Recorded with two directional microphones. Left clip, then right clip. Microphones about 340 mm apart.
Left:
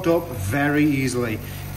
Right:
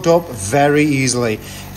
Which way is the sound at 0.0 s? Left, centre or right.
Centre.